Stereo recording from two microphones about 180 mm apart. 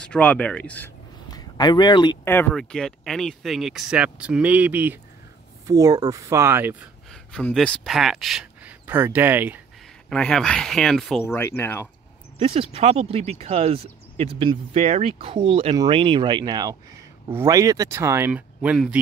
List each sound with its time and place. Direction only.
0.0 s speech: 5° left (ahead or behind)
1.3 s speech: 25° left (ahead or behind)
2.2 s speech: 10° left (ahead or behind); by 4.9 s 10° right (ahead or behind)
5.7 s speech: 20° right (ahead or behind)
7.1 s speech: 5° left (ahead or behind)
10.0 s speech: 5° left (ahead or behind)
11.2 s speech: 15° left (ahead or behind)
12.4 s speech: 30° right (ahead or behind)
14.8 s speech: 40° right (ahead or behind); by 18.9 s 5° right (ahead or behind)